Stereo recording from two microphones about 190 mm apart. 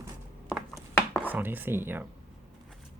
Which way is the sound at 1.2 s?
10° right (ahead or behind).